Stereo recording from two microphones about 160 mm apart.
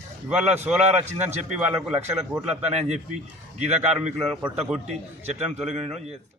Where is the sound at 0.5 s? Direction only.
10° right (ahead or behind).